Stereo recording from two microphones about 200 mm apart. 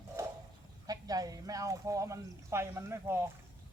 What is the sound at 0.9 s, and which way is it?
Speech, 20° right (ahead or behind).